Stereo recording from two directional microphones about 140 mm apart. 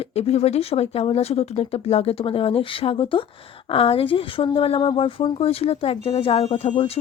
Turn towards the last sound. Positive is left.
turn(degrees=45)  # may be behind; listen again after turning